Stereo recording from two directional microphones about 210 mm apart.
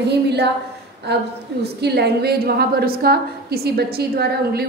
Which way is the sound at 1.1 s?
50° right (ahead or behind).